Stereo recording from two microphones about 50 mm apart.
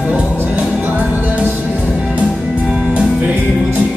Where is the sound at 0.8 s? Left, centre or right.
Right.